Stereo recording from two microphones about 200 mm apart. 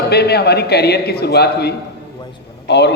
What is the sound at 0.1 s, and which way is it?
A man's voice, 55° left (ahead or behind).